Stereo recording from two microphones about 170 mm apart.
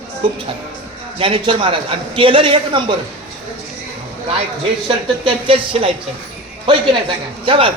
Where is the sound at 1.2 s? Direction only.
30° right (ahead or behind).